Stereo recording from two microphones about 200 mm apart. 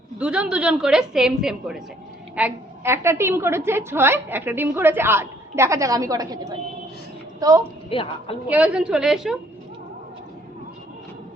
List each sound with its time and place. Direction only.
0.2 s a woman's voice: 5° right (ahead or behind)
7.9 s a woman's voice: 25° left (ahead or behind)
8.4 s a woman's voice: 5° right (ahead or behind)